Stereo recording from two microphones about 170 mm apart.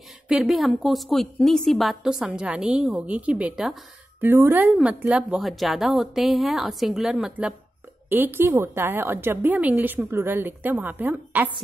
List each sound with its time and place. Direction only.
0.3 s a woman's voice: centre (ahead or behind)